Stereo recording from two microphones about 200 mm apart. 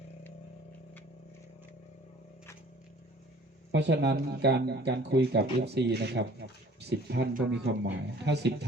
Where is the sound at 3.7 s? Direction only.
60° right (ahead or behind).